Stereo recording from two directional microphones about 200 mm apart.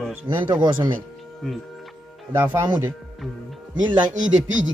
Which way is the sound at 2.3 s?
10° right (ahead or behind).